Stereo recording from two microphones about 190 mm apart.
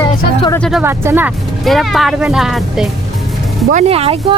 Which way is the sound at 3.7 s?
30° right (ahead or behind).